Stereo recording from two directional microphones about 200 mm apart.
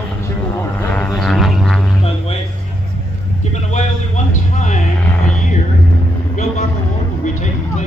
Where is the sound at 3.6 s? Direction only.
35° left (ahead or behind).